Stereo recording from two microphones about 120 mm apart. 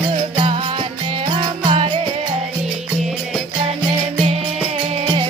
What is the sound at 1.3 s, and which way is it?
Music, 40° right (ahead or behind).